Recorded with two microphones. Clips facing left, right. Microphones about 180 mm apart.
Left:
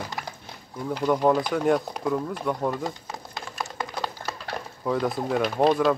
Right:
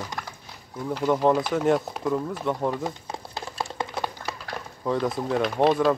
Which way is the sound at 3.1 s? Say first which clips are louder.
Right 2 dB; 30° right (ahead or behind).